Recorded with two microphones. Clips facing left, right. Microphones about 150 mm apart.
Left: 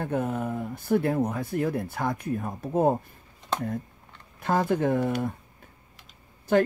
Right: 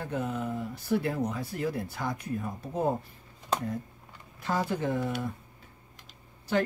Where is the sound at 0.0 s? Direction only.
55° left (ahead or behind).